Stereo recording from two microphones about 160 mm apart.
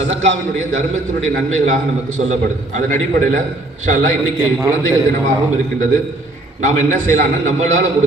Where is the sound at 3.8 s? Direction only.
50° right (ahead or behind).